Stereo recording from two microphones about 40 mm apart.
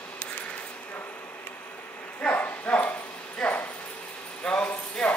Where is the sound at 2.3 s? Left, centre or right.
Left.